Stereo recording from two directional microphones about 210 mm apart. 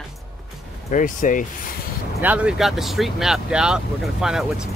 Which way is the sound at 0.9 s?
40° left (ahead or behind).